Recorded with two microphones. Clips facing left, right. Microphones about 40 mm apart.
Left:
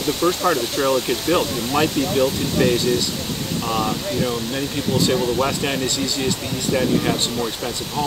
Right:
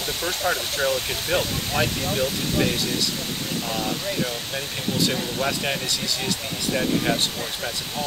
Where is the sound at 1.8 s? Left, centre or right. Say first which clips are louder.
Left 6 dB; centre.